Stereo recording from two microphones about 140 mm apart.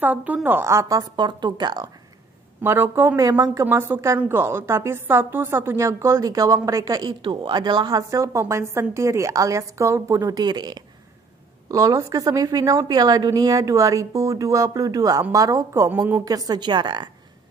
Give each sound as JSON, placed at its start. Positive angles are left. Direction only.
{"t": 0.0, "sound": "a woman's voice", "side_deg": -10}
{"t": 2.6, "sound": "a woman's voice", "side_deg": -15}